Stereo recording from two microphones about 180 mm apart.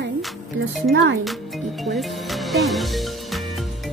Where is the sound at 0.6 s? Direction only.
90° right.